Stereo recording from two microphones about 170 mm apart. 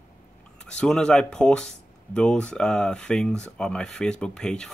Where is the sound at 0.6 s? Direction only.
5° left (ahead or behind).